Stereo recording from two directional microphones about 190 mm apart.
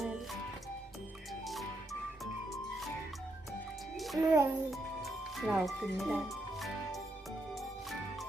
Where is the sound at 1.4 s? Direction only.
Centre (ahead or behind).